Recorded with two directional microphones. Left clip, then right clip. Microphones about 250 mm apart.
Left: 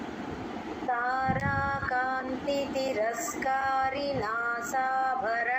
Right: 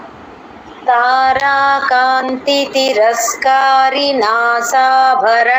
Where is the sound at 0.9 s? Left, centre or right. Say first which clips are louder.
Right 18 dB; right.